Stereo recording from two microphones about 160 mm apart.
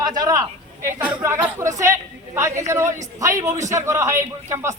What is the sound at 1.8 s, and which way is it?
A woman's voice, 20° right (ahead or behind).